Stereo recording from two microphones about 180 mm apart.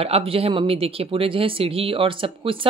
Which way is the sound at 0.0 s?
30° right (ahead or behind).